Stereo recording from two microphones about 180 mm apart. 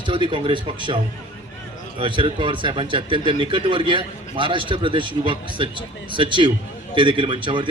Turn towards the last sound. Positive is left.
turn(degrees=-25)  # may be behind; listen again after turning